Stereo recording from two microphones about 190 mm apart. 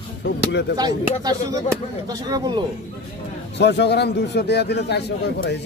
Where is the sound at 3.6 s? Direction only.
65° left (ahead or behind).